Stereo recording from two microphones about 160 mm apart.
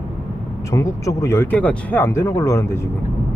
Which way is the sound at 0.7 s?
20° left (ahead or behind).